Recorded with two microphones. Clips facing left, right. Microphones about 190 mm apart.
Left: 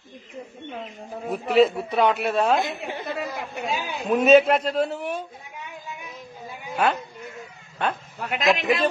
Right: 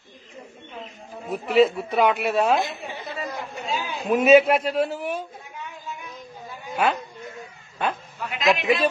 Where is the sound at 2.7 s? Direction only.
55° left (ahead or behind).